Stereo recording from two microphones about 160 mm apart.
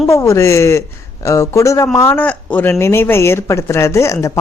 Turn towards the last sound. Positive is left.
turn(degrees=20)  # may be behind; listen again after turning